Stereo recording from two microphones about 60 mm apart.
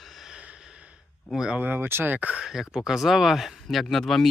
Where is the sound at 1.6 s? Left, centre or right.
Right.